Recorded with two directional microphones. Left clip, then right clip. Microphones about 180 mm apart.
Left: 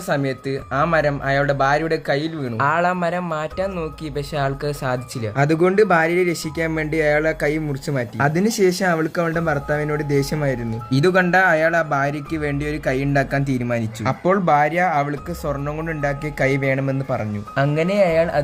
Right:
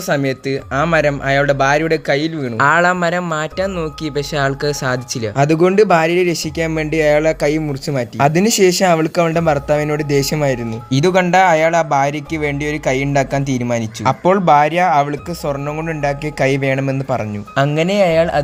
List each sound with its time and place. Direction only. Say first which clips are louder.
0.1 s speech: right 4 dB; 30° right (ahead or behind)
8.2 s speech: right 6 dB; 40° right (ahead or behind)
10.9 s speech: right 4 dB; 25° right (ahead or behind)